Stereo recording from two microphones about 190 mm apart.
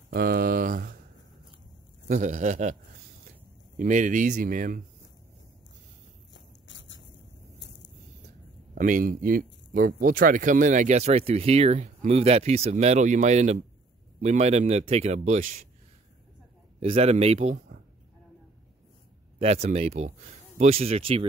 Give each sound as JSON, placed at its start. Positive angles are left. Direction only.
{"t": 0.1, "sound": "a sound", "side_deg": -50}
{"t": 2.0, "sound": "speech", "side_deg": -40}
{"t": 6.3, "sound": "a sound", "side_deg": 75}
{"t": 8.7, "sound": "speech", "side_deg": -45}
{"t": 16.8, "sound": "speech", "side_deg": -35}
{"t": 19.3, "sound": "speech", "side_deg": -35}